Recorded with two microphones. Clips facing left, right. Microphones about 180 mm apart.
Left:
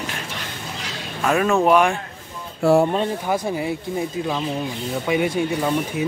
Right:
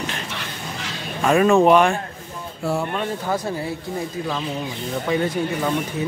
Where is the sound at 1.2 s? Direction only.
Centre (ahead or behind).